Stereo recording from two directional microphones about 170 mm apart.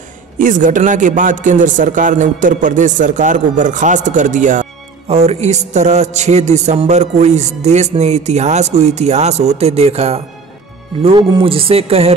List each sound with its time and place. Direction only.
0.4 s a man's voice: 50° right (ahead or behind)